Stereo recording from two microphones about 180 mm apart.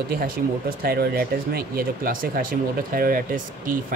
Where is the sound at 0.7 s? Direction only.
60° right (ahead or behind).